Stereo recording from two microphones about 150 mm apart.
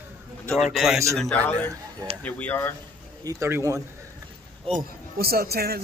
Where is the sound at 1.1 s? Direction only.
5° left (ahead or behind).